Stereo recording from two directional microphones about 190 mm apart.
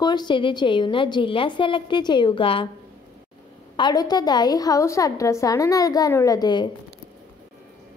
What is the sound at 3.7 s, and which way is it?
A woman's voice, 20° left (ahead or behind).